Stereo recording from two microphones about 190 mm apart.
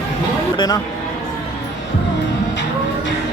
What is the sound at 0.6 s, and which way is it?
Speech, 20° left (ahead or behind).